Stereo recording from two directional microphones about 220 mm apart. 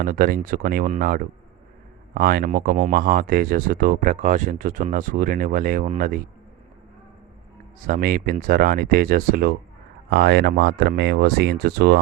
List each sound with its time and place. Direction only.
0.0 s speech: 40° right (ahead or behind)
7.9 s speech: 40° right (ahead or behind)